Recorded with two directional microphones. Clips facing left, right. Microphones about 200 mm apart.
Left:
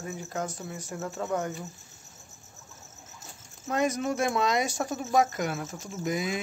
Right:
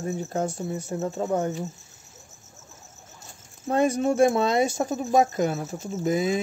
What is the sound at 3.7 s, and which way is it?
Speech, 30° right (ahead or behind).